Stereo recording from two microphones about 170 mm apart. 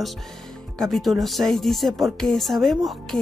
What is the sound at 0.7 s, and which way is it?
Speech, centre (ahead or behind).